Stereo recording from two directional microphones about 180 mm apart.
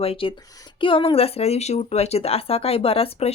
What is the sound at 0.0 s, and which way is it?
Speech, 30° left (ahead or behind).